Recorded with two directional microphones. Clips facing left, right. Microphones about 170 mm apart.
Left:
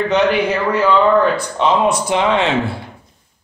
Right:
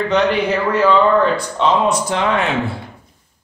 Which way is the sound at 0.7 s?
Centre (ahead or behind).